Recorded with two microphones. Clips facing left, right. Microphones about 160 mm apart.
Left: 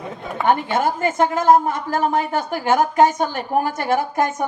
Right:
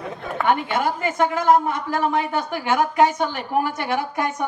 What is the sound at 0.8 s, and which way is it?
A woman's voice, 45° left (ahead or behind).